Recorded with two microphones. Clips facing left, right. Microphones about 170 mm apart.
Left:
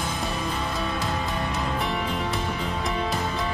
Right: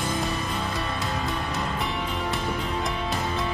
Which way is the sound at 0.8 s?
Centre (ahead or behind).